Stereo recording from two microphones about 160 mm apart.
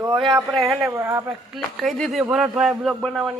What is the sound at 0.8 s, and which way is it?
Speech, 20° right (ahead or behind).